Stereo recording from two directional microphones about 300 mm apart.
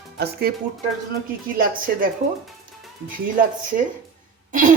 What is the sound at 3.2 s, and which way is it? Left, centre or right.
Speech, right.